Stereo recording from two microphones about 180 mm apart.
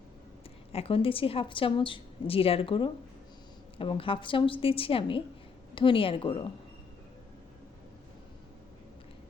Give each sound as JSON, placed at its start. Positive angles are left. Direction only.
{"t": 0.7, "sound": "a woman's voice", "side_deg": 35}